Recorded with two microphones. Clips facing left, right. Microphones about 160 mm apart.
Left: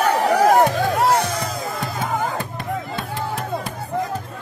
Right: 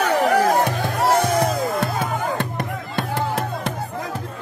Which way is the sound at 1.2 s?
60° right (ahead or behind).